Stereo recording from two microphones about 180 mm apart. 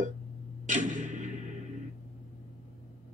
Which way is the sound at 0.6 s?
45° right (ahead or behind).